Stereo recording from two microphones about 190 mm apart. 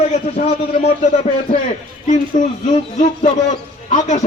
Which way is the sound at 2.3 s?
40° left (ahead or behind).